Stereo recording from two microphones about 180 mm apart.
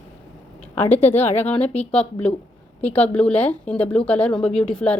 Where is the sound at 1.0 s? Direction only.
35° left (ahead or behind).